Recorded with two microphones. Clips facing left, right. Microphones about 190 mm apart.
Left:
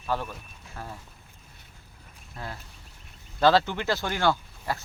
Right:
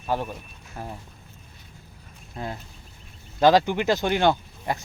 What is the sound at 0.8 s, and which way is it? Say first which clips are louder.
Speech: right 4 dB; 20° right (ahead or behind).